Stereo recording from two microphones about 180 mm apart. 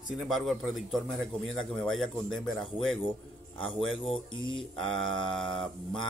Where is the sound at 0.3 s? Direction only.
Centre (ahead or behind).